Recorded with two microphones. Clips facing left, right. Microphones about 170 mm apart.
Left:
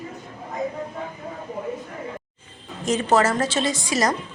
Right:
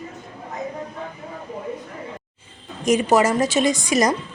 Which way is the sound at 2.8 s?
15° right (ahead or behind).